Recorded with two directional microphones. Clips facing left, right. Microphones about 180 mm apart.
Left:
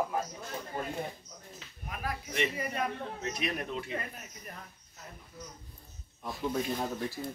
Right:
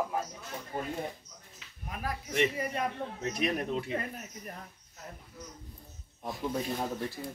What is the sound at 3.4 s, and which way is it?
Speech, 35° right (ahead or behind).